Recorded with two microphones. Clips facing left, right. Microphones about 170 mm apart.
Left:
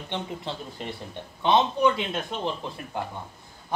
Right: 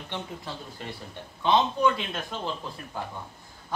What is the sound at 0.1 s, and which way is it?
Speech, 20° left (ahead or behind).